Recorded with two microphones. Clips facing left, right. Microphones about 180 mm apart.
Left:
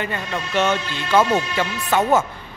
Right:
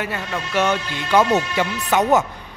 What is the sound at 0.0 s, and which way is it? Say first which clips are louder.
Speech: even; 5° right (ahead or behind).